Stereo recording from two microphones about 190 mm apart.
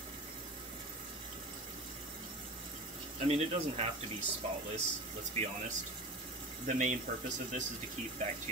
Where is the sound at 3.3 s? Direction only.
35° right (ahead or behind).